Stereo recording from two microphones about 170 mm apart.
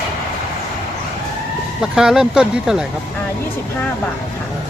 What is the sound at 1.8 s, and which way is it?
Speech, 5° right (ahead or behind).